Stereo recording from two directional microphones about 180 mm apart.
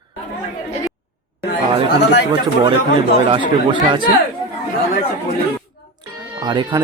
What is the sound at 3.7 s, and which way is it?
Speech, 25° right (ahead or behind).